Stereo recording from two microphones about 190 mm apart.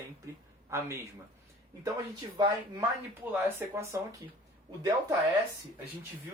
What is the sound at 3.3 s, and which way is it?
Speech, 15° right (ahead or behind).